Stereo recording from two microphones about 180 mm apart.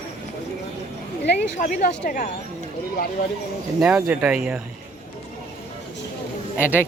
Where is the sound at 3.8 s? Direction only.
5° right (ahead or behind).